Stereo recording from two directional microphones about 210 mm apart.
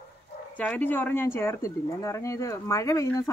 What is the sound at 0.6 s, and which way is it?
Speech, 10° left (ahead or behind).